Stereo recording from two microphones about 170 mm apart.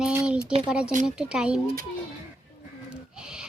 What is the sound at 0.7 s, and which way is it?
Speech, 5° right (ahead or behind).